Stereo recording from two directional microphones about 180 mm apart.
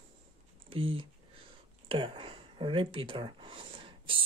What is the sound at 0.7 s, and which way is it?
Speech, 30° right (ahead or behind).